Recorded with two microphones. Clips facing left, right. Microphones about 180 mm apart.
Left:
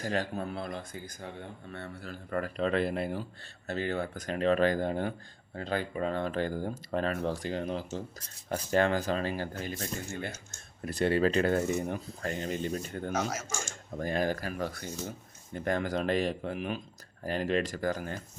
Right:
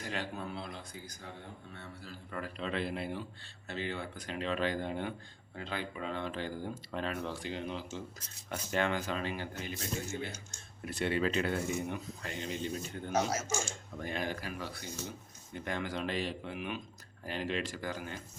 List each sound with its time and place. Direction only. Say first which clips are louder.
0.0 s speech: left 6 dB; 40° left (ahead or behind)
10.8 s speech: left 6 dB; 40° left (ahead or behind)
13.7 s speech: left 6 dB; 40° left (ahead or behind)